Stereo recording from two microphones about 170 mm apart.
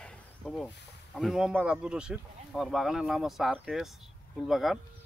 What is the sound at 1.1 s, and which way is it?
Speech, centre (ahead or behind).